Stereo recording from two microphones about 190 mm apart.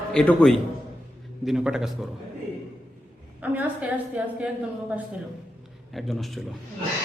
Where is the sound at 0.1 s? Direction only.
5° left (ahead or behind).